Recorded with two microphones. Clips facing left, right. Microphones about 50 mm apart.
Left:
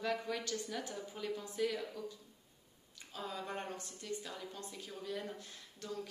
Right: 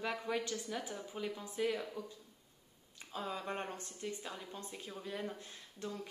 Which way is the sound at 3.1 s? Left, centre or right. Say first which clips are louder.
Right 2 dB; right.